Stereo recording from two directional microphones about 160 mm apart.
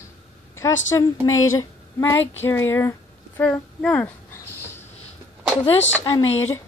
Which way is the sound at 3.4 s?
10° left (ahead or behind).